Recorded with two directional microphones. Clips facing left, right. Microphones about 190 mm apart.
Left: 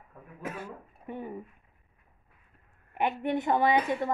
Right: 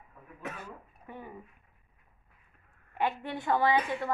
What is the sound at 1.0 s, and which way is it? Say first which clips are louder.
Speech: left 7 dB; 25° left (ahead or behind).